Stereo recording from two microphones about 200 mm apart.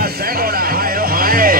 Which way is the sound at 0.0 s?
50° right (ahead or behind).